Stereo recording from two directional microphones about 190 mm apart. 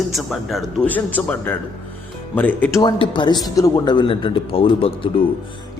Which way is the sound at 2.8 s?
25° left (ahead or behind).